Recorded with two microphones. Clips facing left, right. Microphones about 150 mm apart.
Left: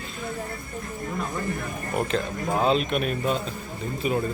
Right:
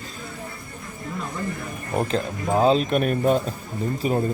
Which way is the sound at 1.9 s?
30° right (ahead or behind).